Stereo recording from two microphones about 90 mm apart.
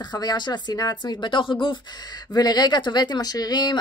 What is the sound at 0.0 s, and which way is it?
Speech, 50° left (ahead or behind).